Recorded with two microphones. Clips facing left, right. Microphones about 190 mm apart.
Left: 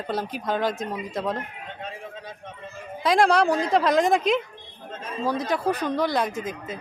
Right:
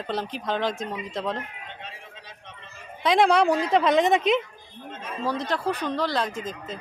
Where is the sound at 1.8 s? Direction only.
50° left (ahead or behind).